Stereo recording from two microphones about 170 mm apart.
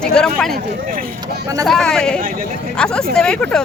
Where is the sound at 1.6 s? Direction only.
5° left (ahead or behind).